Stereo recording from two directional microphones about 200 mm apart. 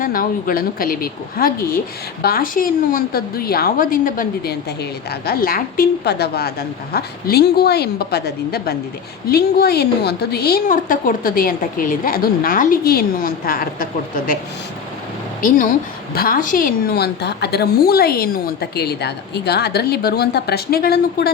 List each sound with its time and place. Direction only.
0.0 s a woman's voice: 45° left (ahead or behind)
16.1 s a woman's voice: 45° left (ahead or behind)